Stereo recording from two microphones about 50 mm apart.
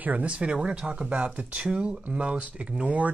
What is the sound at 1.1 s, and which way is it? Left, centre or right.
Speech, right.